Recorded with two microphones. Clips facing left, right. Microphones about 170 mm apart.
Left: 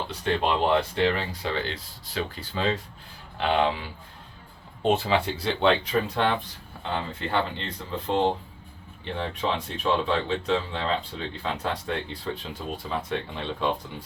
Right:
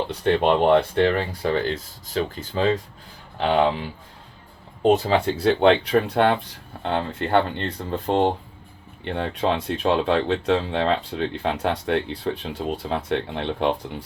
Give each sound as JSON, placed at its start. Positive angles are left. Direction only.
{"t": 0.1, "sound": "speech", "side_deg": -55}
{"t": 4.8, "sound": "speech", "side_deg": -35}
{"t": 5.4, "sound": "speech", "side_deg": -55}
{"t": 9.1, "sound": "speech", "side_deg": -70}
{"t": 11.4, "sound": "speech", "side_deg": -70}